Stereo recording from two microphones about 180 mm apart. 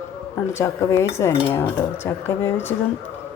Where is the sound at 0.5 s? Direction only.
15° left (ahead or behind).